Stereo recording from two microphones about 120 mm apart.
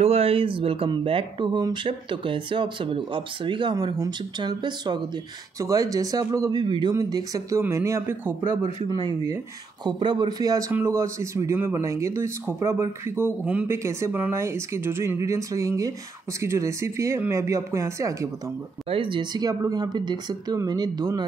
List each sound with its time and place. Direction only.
0.0 s speech: 55° right (ahead or behind); by 8.5 s 20° right (ahead or behind)
8.8 s speech: 35° right (ahead or behind)
10.7 s speech: 20° right (ahead or behind)
18.9 s speech: 45° right (ahead or behind)